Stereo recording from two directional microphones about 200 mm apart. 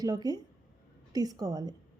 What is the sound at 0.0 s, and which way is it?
A woman's voice, 20° right (ahead or behind).